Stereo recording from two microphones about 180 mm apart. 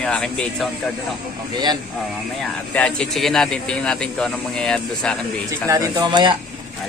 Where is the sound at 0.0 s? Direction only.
5° left (ahead or behind).